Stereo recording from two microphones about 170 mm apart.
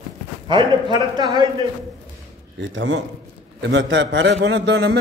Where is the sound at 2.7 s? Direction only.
90° right.